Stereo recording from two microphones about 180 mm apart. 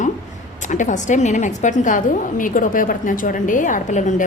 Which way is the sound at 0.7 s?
45° left (ahead or behind).